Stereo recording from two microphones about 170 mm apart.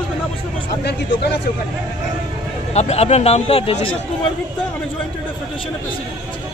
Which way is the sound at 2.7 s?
40° left (ahead or behind).